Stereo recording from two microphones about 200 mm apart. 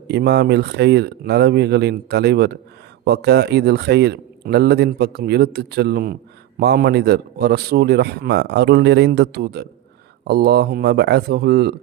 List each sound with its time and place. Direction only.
0.1 s a man's voice: 55° right (ahead or behind)